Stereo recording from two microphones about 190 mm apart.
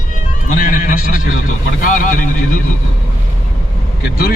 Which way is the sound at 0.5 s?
45° left (ahead or behind).